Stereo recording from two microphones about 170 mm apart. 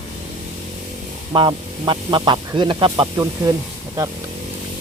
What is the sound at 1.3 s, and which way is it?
Speech, 30° right (ahead or behind).